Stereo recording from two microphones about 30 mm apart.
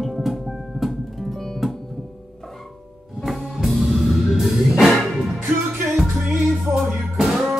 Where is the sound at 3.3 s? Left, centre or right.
Centre.